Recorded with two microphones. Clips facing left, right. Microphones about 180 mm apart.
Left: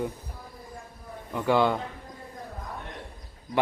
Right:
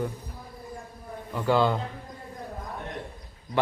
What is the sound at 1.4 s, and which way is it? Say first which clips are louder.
Speech: even; 20° left (ahead or behind).